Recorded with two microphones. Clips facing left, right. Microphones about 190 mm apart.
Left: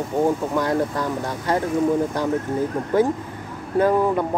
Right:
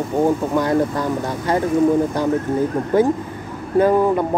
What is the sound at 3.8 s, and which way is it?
Speech, centre (ahead or behind).